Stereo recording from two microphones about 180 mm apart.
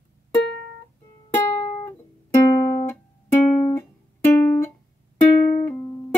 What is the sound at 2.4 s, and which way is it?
Music, 20° left (ahead or behind).